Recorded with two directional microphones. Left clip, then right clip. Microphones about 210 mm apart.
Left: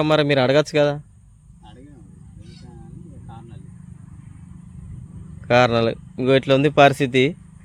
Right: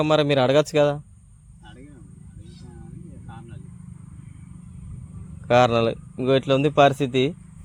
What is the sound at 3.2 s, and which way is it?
Vehicle, 5° right (ahead or behind).